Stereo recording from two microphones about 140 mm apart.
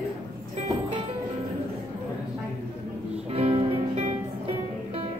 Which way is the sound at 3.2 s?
45° right (ahead or behind).